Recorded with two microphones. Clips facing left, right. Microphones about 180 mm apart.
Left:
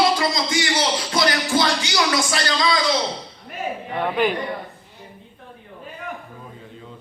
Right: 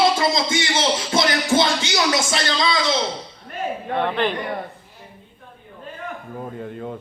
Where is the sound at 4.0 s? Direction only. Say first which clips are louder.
Left 1 dB; 10° left (ahead or behind).